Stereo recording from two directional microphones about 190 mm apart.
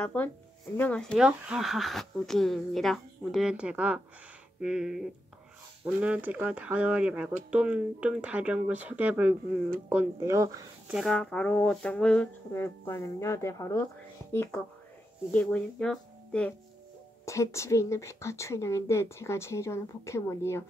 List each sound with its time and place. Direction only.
0.0 s speech: 10° left (ahead or behind); by 10.7 s 15° right (ahead or behind)
10.9 s speech: centre (ahead or behind)